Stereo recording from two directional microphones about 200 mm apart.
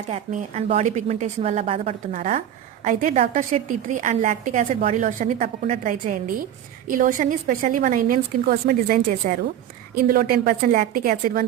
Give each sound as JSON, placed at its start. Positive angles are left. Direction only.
{"t": 0.1, "sound": "a woman's voice", "side_deg": -35}